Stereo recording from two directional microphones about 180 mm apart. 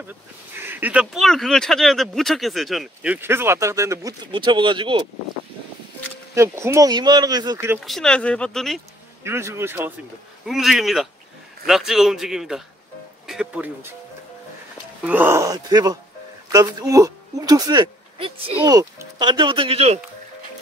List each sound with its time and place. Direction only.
0.6 s speech: 10° right (ahead or behind)
4.3 s speech: 25° right (ahead or behind)
6.3 s speech: 15° right (ahead or behind)
7.8 s speech: centre (ahead or behind)
9.2 s speech: 15° right (ahead or behind)
10.4 s speech: centre (ahead or behind)
15.0 s speech: 10° right (ahead or behind); by 20.0 s 35° right (ahead or behind)